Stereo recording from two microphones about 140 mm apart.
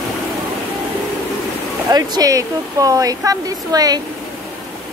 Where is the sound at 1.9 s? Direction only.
25° right (ahead or behind).